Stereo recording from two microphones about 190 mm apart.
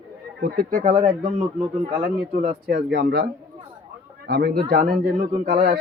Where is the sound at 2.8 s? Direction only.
60° right (ahead or behind).